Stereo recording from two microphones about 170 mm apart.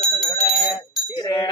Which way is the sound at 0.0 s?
40° left (ahead or behind).